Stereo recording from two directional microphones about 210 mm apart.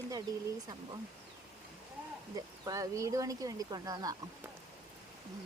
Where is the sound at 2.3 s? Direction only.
15° right (ahead or behind).